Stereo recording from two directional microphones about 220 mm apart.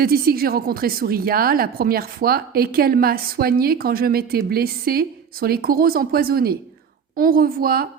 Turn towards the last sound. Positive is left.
turn(degrees=-45)  # may be behind; listen again after turning